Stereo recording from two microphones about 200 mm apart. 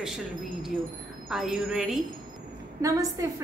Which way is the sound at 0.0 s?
Centre (ahead or behind).